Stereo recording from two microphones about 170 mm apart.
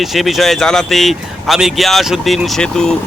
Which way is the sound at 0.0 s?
Centre (ahead or behind).